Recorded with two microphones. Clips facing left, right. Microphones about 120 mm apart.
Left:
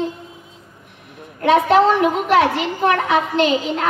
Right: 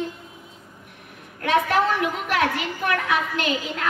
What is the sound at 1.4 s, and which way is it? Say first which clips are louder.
A woman's voice: left 7 dB; 25° left (ahead or behind).